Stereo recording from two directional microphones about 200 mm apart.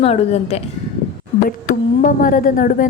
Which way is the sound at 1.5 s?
45° left (ahead or behind).